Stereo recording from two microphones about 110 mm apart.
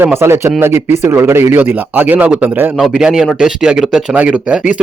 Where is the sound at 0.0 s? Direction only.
20° right (ahead or behind).